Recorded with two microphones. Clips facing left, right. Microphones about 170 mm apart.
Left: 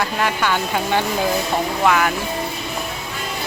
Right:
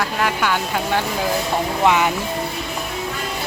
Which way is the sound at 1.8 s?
20° right (ahead or behind).